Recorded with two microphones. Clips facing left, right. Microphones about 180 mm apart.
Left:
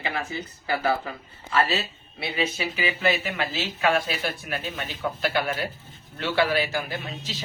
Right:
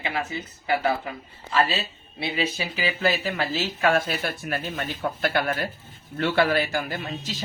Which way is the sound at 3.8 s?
45° right (ahead or behind).